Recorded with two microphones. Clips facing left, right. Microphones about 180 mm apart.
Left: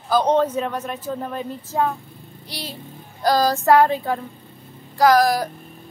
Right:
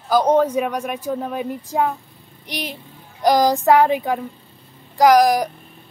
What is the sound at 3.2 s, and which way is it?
A man's voice, 15° right (ahead or behind).